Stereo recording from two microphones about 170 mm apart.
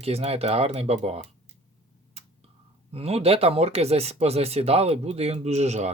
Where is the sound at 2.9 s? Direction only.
35° right (ahead or behind).